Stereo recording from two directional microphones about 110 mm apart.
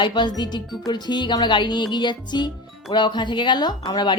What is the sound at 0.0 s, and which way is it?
A woman's voice, 40° left (ahead or behind).